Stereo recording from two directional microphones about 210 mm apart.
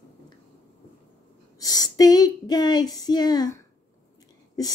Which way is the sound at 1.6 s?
15° left (ahead or behind).